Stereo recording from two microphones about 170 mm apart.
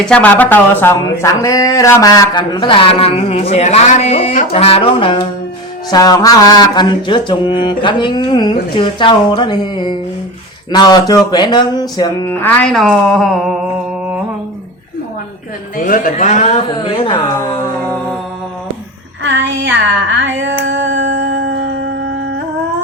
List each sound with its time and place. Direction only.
0.0 s speech: 5° left (ahead or behind); by 5.2 s 30° left (ahead or behind)
5.9 s mantra: 20° left (ahead or behind)
12.3 s speech: 10° left (ahead or behind)
15.8 s speech: 55° left (ahead or behind)
16.6 s mantra: 30° left (ahead or behind)
17.8 s music: 10° left (ahead or behind)
19.2 s a sound: 90° right